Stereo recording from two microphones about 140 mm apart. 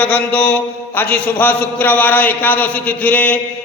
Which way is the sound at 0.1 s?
10° left (ahead or behind).